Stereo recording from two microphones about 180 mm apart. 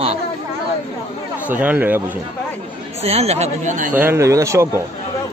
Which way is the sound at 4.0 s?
15° right (ahead or behind).